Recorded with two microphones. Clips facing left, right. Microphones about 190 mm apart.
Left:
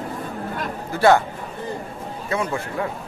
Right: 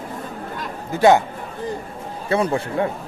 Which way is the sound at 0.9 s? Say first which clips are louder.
Right 2 dB; 20° right (ahead or behind).